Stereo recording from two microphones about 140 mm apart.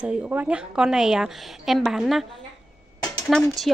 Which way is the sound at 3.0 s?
25° left (ahead or behind).